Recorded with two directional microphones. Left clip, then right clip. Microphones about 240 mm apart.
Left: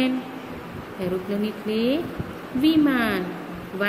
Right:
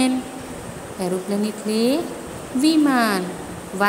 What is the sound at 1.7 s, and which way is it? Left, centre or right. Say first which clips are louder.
A woman's voice: right 3 dB; centre.